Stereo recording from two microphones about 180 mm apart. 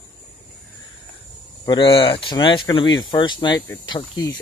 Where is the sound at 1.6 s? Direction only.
25° left (ahead or behind).